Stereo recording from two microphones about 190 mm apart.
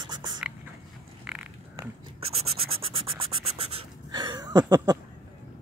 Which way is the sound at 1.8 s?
30° right (ahead or behind).